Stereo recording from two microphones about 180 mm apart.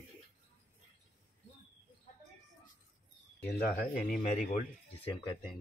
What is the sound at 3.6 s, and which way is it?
Speech, 50° left (ahead or behind).